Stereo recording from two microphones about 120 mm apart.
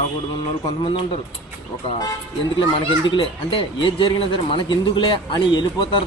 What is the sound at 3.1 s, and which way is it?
Speech, 45° left (ahead or behind).